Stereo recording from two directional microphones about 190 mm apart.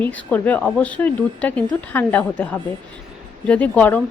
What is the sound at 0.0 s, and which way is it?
A woman's voice, 10° left (ahead or behind).